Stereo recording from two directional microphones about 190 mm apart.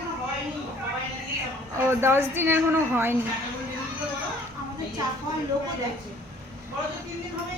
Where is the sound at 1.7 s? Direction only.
15° right (ahead or behind).